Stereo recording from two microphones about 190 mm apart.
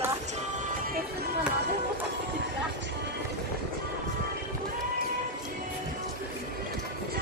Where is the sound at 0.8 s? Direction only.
50° right (ahead or behind).